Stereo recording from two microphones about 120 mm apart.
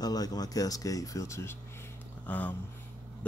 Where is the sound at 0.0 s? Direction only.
35° left (ahead or behind).